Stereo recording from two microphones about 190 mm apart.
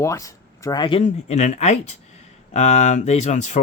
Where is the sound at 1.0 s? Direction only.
35° left (ahead or behind).